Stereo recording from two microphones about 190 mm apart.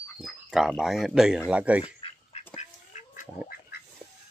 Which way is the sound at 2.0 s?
30° left (ahead or behind).